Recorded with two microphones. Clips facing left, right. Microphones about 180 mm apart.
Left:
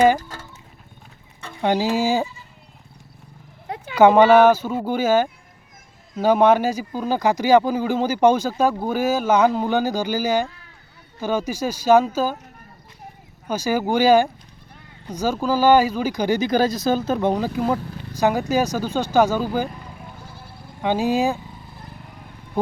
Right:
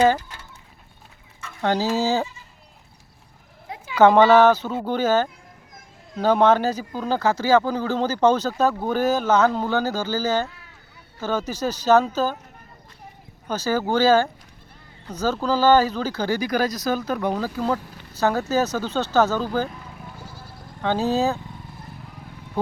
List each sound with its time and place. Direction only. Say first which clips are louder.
0.2 s chicken: left 5 dB; 45° left (ahead or behind)
1.6 s speech: left 2 dB; 15° left (ahead or behind)
3.9 s speech: left 2 dB; 10° left (ahead or behind)
13.5 s speech: left 1 dB; 10° left (ahead or behind)
20.8 s speech: left 1 dB; 10° left (ahead or behind)
22.6 s speech: left 2 dB; 10° left (ahead or behind)